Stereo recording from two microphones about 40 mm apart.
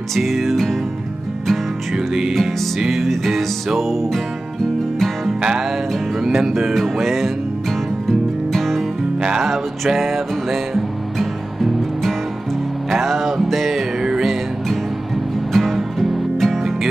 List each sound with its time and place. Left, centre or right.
0.1 s music: centre
2.9 s music: centre
6.2 s speech: centre
6.7 s music: centre
9.9 s music: centre
11.1 s music: centre
15.5 s music: centre